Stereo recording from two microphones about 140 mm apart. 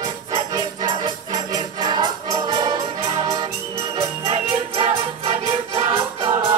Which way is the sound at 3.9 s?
45° right (ahead or behind).